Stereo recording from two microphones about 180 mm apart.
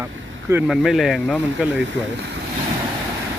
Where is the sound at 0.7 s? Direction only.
Centre (ahead or behind).